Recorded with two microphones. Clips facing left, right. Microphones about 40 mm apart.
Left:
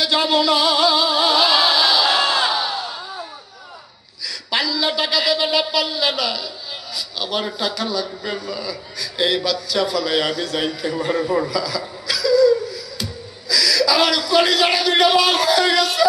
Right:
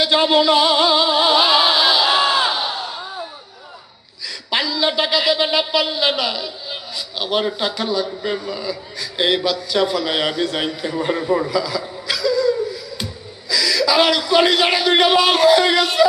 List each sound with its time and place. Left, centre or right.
0.0 s music: right
4.3 s a sound: right
13.5 s speech: right